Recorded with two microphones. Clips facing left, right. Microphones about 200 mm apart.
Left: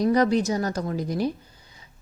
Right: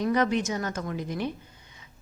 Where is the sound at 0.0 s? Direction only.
35° left (ahead or behind).